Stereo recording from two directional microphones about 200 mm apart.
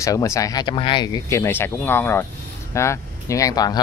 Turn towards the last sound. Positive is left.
turn(degrees=20)  # may be behind; listen again after turning